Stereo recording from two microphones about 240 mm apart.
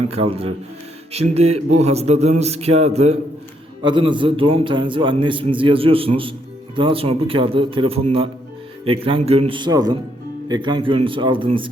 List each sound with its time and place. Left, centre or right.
0.1 s a man's voice: right